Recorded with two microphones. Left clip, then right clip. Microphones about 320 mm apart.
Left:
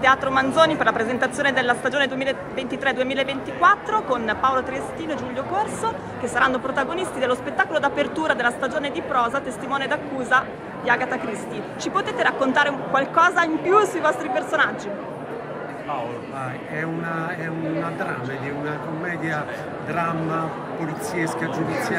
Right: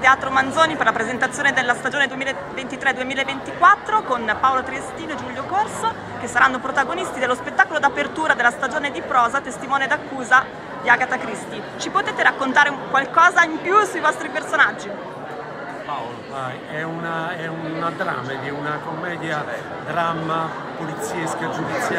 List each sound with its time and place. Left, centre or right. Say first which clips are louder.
0.0 s speech: right 2 dB; centre
19.0 s a man's voice: even; centre